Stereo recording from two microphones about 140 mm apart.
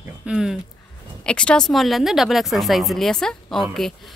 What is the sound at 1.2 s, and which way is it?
A woman's voice, 5° left (ahead or behind).